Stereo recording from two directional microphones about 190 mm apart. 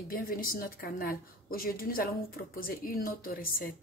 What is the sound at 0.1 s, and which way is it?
A woman's voice, 50° left (ahead or behind).